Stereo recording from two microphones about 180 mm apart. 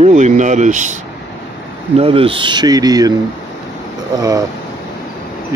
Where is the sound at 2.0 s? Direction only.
30° right (ahead or behind).